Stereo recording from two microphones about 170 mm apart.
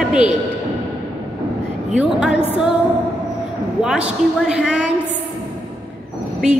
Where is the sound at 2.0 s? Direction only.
5° right (ahead or behind).